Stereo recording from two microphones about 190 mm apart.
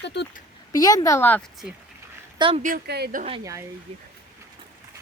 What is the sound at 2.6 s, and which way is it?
Speech, 55° right (ahead or behind).